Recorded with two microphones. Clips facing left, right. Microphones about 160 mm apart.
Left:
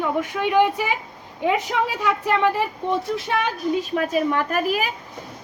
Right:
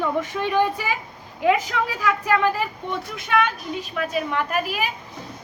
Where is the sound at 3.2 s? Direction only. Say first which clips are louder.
Right 4 dB; 40° left (ahead or behind).